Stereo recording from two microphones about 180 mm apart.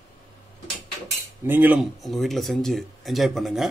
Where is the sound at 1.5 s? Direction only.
10° right (ahead or behind).